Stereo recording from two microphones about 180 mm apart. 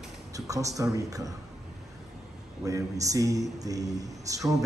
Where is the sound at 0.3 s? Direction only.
20° right (ahead or behind).